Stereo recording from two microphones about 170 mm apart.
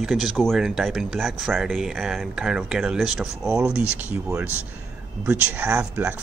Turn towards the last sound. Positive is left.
turn(degrees=-10)  # may be behind; listen again after turning